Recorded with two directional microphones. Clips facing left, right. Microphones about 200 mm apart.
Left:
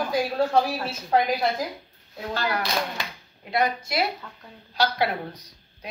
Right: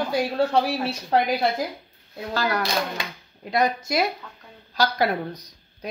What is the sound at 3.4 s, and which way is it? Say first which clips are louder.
A woman's voice: right 2 dB; 45° right (ahead or behind).